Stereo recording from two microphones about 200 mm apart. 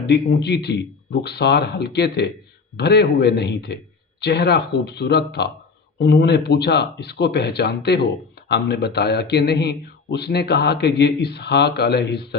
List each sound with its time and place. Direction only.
0.1 s speech: 55° left (ahead or behind)